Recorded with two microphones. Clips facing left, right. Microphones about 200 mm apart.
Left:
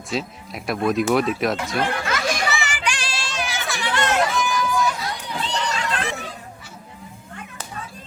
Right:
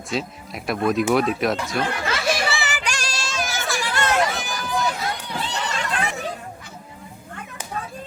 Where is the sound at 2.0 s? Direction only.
30° right (ahead or behind).